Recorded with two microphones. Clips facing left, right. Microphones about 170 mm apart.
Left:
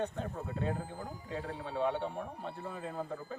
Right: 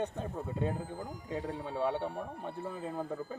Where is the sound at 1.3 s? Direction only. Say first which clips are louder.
Right 2 dB; 15° right (ahead or behind).